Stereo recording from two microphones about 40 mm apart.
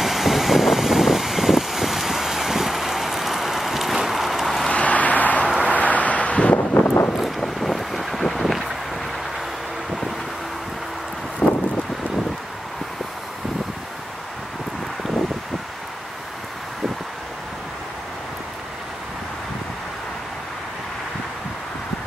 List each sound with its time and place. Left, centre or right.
0.0 s vehicle: centre
4.6 s a sound: left
5.7 s wind: left
6.5 s wind: left
7.2 s wind: centre
11.4 s wind: left